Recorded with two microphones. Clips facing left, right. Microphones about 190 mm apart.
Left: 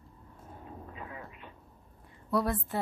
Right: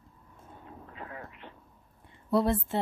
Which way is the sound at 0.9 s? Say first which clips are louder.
Right 3 dB; 20° left (ahead or behind).